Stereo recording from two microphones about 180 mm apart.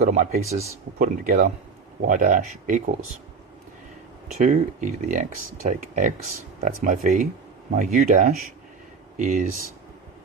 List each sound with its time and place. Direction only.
0.0 s speech: 45° right (ahead or behind)
4.4 s speech: 45° right (ahead or behind)